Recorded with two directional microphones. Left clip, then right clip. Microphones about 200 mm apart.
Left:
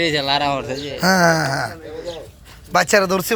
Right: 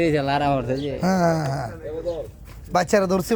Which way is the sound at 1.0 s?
5° left (ahead or behind).